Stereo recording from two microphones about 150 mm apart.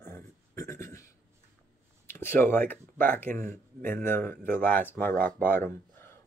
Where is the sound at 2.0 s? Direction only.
15° left (ahead or behind).